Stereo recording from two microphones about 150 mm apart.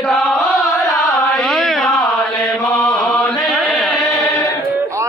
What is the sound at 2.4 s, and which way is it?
Mantra, 10° left (ahead or behind).